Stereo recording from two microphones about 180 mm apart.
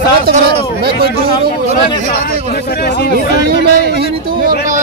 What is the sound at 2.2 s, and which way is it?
Speech, 60° left (ahead or behind).